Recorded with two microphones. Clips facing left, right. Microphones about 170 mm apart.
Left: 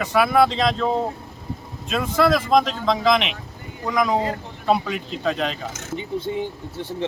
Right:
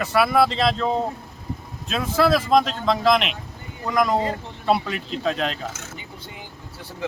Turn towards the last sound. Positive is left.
turn(degrees=25)  # may be behind; listen again after turning